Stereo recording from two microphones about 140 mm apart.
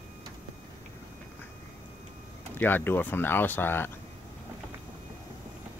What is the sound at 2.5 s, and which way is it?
Speech, 15° left (ahead or behind).